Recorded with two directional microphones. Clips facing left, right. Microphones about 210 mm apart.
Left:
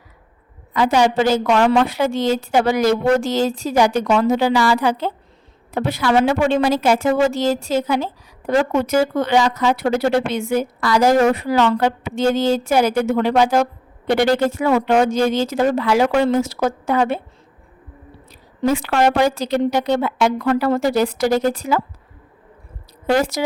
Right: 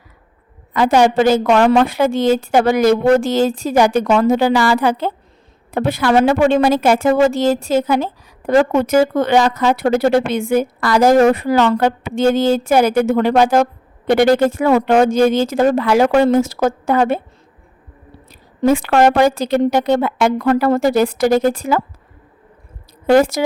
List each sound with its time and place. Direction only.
0.7 s a woman's voice: 55° right (ahead or behind)
18.3 s a woman's voice: 50° right (ahead or behind)
23.0 s a woman's voice: 50° right (ahead or behind)